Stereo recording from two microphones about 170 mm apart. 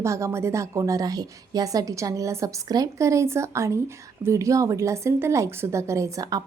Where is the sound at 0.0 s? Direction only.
15° right (ahead or behind).